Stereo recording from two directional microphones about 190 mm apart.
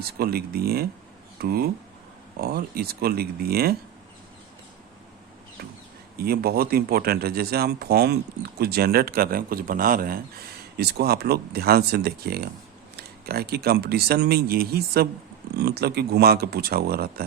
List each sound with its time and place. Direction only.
0.0 s speech: 55° right (ahead or behind)
6.1 s speech: 55° right (ahead or behind)